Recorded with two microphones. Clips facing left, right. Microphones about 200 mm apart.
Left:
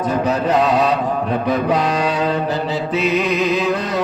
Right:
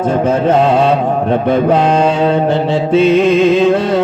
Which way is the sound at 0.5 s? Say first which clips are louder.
Right 4 dB; 25° right (ahead or behind).